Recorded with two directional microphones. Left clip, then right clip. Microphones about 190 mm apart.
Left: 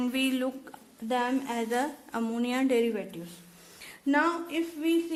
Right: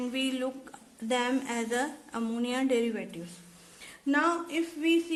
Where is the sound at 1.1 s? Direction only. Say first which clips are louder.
Even; 10° left (ahead or behind).